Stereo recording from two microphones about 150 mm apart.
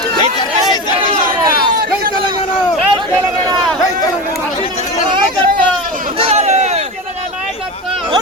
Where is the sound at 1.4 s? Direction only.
30° right (ahead or behind).